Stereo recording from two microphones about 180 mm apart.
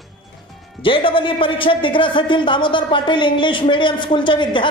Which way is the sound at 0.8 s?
30° left (ahead or behind).